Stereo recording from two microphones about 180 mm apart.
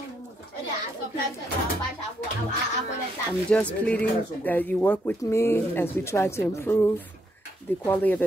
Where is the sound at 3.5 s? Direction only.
5° left (ahead or behind).